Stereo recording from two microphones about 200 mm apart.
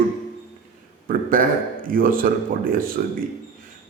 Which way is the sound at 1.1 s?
45° right (ahead or behind).